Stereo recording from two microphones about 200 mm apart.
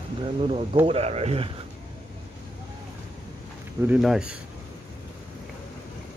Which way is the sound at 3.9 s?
Centre (ahead or behind).